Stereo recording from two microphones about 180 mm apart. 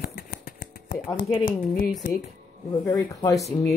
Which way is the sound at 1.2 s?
50° left (ahead or behind).